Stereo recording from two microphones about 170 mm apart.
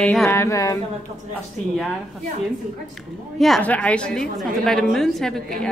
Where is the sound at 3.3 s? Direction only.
Centre (ahead or behind).